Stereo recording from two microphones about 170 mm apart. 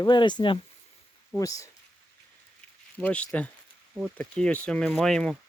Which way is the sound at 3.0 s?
5° left (ahead or behind).